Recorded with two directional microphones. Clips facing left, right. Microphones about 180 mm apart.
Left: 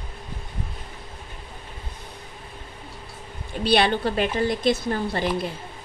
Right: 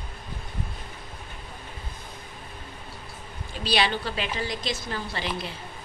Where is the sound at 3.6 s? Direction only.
55° left (ahead or behind).